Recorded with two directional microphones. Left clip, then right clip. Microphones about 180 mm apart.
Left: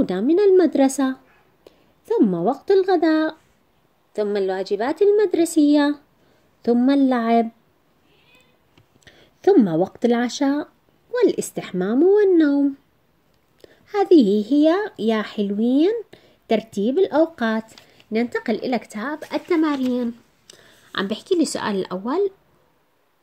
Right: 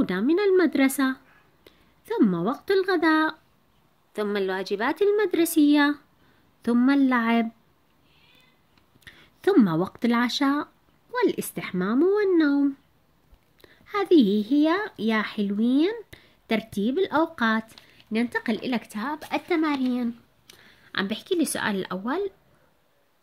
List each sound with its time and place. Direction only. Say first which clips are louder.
0.0 s a woman's voice: left 6 dB; 15° right (ahead or behind)
9.0 s a child's voice: left 6 dB; 25° right (ahead or behind)